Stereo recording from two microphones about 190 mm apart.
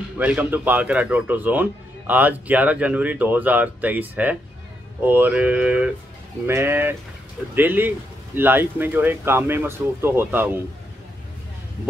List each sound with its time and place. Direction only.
0.2 s a man's voice: 5° right (ahead or behind)